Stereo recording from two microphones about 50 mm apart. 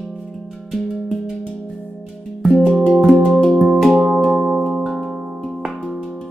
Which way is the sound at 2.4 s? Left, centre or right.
Centre.